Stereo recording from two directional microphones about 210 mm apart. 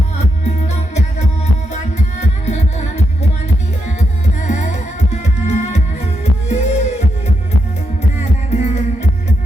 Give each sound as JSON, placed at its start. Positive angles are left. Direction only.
{"t": 1.7, "sound": "music", "side_deg": 35}
{"t": 4.4, "sound": "music", "side_deg": 35}
{"t": 8.2, "sound": "music", "side_deg": 35}